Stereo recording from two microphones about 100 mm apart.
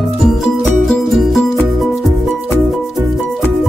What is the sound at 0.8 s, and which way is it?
Music, centre (ahead or behind).